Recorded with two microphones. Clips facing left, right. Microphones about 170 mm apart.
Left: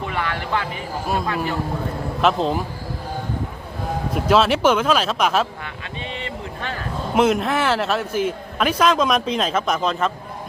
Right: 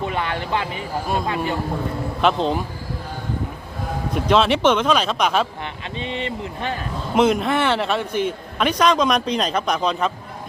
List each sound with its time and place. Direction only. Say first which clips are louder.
0.0 s speech: right 1 dB; 20° right (ahead or behind)
2.2 s a man's voice: even; centre (ahead or behind)
4.1 s a man's voice: even; 5° left (ahead or behind)
6.0 s speech: right 4 dB; 20° right (ahead or behind)
7.2 s a man's voice: right 1 dB; 5° left (ahead or behind)